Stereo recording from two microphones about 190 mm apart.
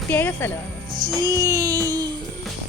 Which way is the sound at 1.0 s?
20° right (ahead or behind).